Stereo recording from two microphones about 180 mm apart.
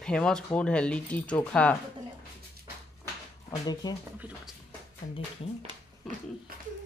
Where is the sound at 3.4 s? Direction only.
20° left (ahead or behind).